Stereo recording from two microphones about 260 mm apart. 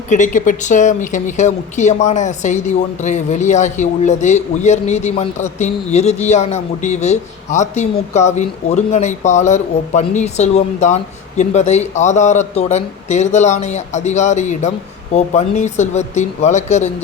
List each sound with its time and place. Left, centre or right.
0.1 s speech: left